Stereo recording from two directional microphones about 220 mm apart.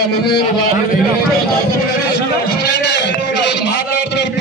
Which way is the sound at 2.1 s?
50° left (ahead or behind).